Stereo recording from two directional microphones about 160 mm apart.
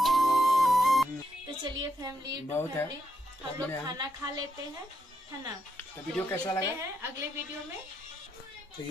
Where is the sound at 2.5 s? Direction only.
15° left (ahead or behind).